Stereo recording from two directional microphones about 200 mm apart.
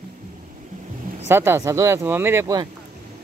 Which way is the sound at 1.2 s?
10° right (ahead or behind).